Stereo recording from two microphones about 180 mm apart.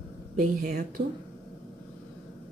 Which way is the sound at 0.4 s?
50° right (ahead or behind).